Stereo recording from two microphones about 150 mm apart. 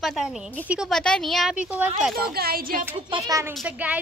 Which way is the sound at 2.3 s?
85° right.